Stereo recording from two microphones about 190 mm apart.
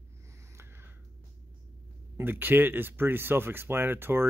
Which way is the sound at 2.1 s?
10° right (ahead or behind).